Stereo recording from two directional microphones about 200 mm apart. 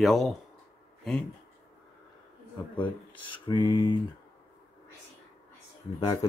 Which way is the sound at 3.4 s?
20° left (ahead or behind).